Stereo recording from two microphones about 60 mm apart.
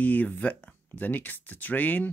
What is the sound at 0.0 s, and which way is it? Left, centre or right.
Speech, left.